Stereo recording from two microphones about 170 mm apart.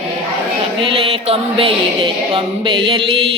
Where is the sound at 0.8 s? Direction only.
30° right (ahead or behind).